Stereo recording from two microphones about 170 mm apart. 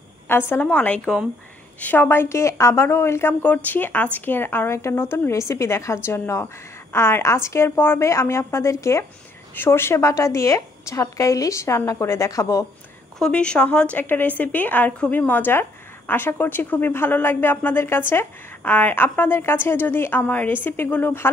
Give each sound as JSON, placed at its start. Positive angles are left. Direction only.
{"t": 0.5, "sound": "speech", "side_deg": 10}
{"t": 13.2, "sound": "speech", "side_deg": 5}